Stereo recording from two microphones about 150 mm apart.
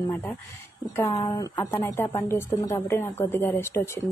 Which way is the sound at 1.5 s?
20° left (ahead or behind).